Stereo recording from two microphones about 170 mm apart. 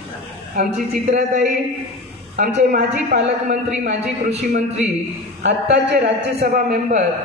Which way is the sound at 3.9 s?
40° right (ahead or behind).